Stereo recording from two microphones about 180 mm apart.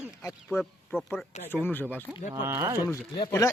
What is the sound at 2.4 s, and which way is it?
Speech, 15° right (ahead or behind).